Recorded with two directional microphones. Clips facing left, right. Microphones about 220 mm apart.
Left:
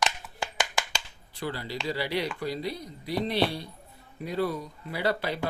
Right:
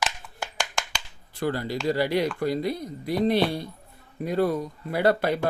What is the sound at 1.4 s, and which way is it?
Speech, 50° right (ahead or behind).